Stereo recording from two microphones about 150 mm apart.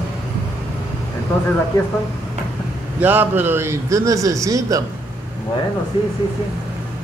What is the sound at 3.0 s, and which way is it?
A man's voice, 10° right (ahead or behind).